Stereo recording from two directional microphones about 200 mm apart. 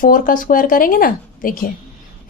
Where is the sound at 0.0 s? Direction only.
45° left (ahead or behind).